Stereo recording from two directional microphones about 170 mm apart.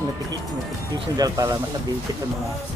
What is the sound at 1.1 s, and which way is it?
Speech, 20° right (ahead or behind).